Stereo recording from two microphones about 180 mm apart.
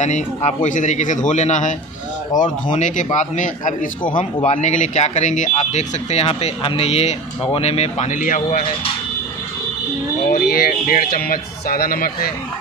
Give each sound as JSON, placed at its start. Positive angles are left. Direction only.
{"t": 0.0, "sound": "a man's voice", "side_deg": 40}
{"t": 10.3, "sound": "speech", "side_deg": 55}